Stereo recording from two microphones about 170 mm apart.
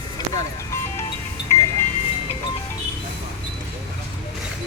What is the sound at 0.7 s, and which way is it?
Music, 15° left (ahead or behind).